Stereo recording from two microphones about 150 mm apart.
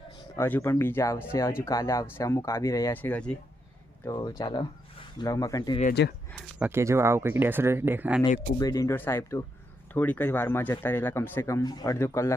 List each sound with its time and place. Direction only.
0.3 s speech: 15° left (ahead or behind)
4.0 s speech: 25° left (ahead or behind)
5.9 s speech: 90° left
6.6 s speech: 15° right (ahead or behind)
8.5 s speech: 25° left (ahead or behind)